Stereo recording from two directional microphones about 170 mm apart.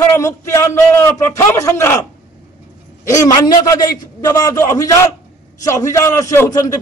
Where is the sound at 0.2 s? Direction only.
15° left (ahead or behind).